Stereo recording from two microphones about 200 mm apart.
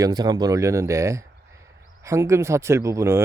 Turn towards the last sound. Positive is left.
turn(degrees=-15)  # may be behind; listen again after turning